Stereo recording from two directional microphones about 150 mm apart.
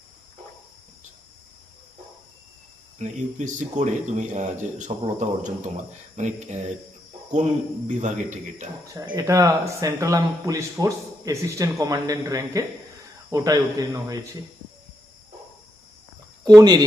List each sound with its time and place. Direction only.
3.0 s speech: 55° right (ahead or behind)
7.9 s speech: 55° right (ahead or behind)
9.0 s speech: 20° right (ahead or behind)
16.6 s speech: 25° right (ahead or behind)